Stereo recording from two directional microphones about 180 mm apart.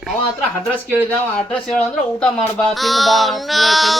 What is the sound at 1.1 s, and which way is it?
Speech, 5° left (ahead or behind).